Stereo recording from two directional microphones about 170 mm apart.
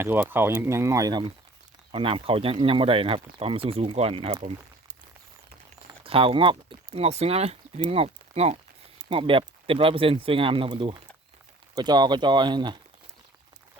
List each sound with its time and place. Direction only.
0.0 s speech: 10° right (ahead or behind); by 4.5 s 30° right (ahead or behind)
6.1 s speech: 35° right (ahead or behind)